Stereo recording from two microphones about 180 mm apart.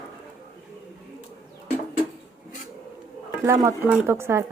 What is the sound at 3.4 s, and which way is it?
Speech, 15° right (ahead or behind).